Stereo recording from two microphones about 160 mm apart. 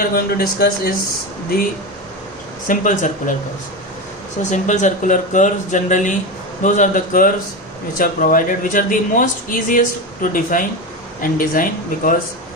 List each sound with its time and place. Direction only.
0.0 s speech: 70° left (ahead or behind)
2.6 s speech: 55° left (ahead or behind)
4.5 s speech: 50° left (ahead or behind)